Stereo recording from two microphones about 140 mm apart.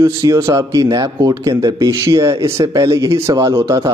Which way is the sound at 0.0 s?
20° right (ahead or behind).